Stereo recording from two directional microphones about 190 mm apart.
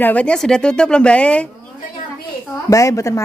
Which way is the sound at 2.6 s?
15° left (ahead or behind).